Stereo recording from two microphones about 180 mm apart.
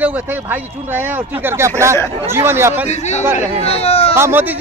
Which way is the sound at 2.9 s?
40° left (ahead or behind).